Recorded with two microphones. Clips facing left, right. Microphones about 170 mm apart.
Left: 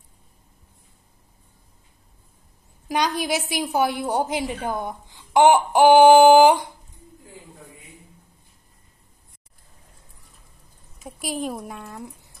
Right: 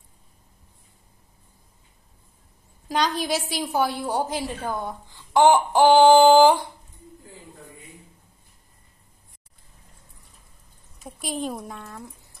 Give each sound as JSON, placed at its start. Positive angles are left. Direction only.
{"t": 2.9, "sound": "a woman's voice", "side_deg": 15}
{"t": 11.0, "sound": "speech", "side_deg": 0}